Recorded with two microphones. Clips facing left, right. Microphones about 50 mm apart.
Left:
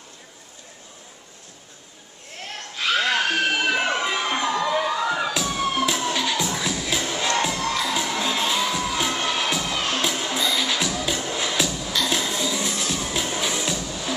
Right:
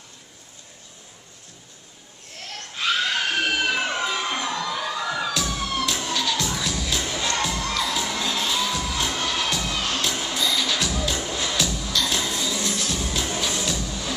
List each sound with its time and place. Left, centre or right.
3.3 s crowd: left
5.5 s emergency vehicle: left
5.9 s music: centre
7.2 s crowd: centre
7.7 s children shouting: centre
8.3 s music: centre
10.0 s music: centre